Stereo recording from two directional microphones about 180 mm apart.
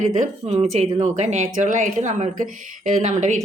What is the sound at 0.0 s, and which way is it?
Speech, 40° right (ahead or behind).